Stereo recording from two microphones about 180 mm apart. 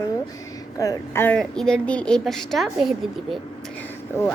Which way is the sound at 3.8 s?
15° left (ahead or behind).